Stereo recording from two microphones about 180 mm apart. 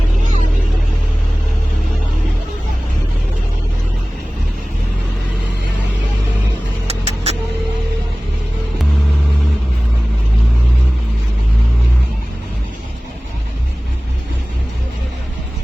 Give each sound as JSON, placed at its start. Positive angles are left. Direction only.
{"t": 6.8, "sound": "vehicle", "side_deg": -35}